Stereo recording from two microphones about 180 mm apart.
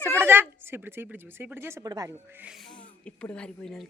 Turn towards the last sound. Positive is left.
turn(degrees=5)  # may be behind; listen again after turning